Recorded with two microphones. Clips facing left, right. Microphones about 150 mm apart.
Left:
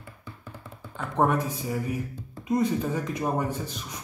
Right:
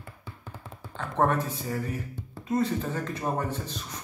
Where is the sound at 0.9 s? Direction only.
10° left (ahead or behind).